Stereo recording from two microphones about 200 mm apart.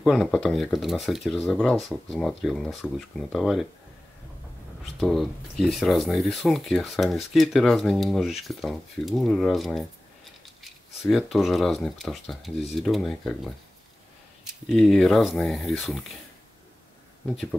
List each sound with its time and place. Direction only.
0.0 s speech: centre (ahead or behind)
5.0 s speech: centre (ahead or behind)